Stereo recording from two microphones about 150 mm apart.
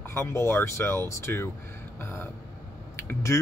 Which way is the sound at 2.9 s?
15° left (ahead or behind).